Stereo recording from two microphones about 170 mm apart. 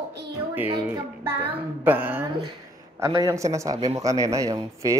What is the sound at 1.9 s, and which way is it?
A child's voice, 10° right (ahead or behind).